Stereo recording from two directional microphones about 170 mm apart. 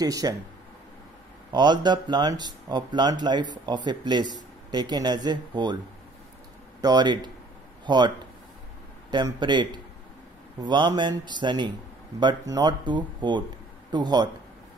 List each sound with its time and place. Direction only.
0.0 s speech: 20° right (ahead or behind)
1.5 s speech: 25° right (ahead or behind)
6.8 s speech: 25° right (ahead or behind)
9.1 s speech: 25° right (ahead or behind)